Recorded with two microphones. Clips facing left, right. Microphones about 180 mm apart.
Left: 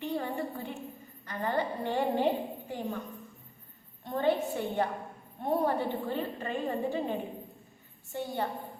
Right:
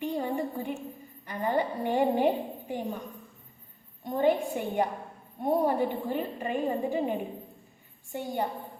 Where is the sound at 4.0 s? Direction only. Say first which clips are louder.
Right 3 dB; 15° right (ahead or behind).